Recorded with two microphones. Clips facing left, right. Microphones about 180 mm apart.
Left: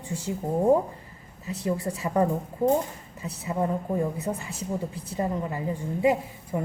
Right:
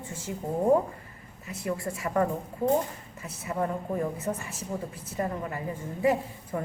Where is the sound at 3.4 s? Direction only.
20° left (ahead or behind).